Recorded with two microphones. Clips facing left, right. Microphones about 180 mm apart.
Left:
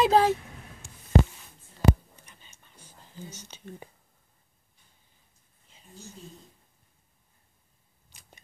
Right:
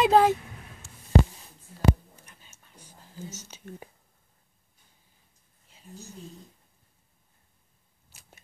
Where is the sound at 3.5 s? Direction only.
5° right (ahead or behind).